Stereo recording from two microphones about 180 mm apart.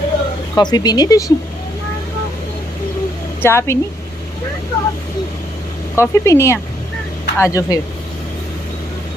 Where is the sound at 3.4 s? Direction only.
15° left (ahead or behind).